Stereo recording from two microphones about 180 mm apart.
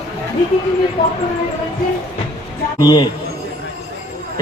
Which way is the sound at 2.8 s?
25° left (ahead or behind).